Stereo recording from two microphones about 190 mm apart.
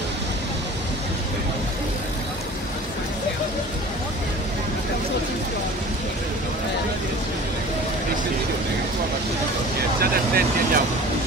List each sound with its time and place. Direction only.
9.9 s vehicle: 50° right (ahead or behind)